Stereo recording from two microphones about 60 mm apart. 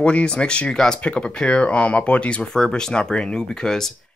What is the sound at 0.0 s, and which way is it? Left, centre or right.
Speech, centre.